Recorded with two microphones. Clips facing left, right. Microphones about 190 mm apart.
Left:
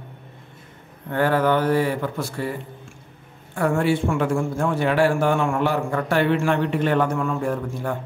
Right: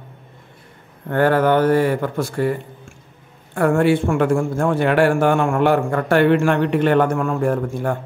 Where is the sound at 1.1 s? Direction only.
55° right (ahead or behind).